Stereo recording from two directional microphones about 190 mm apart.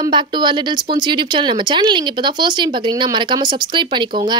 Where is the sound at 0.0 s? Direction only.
25° right (ahead or behind).